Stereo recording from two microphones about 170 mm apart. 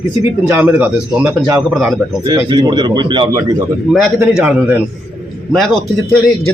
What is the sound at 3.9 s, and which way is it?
Speech, centre (ahead or behind).